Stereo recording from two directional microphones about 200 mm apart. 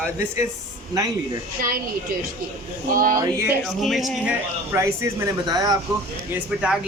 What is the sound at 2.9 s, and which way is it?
Speech, 45° right (ahead or behind).